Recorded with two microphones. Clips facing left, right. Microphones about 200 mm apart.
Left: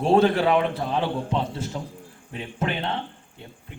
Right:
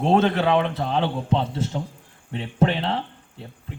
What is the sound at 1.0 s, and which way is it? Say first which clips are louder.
A man's voice: right 3 dB; 25° right (ahead or behind).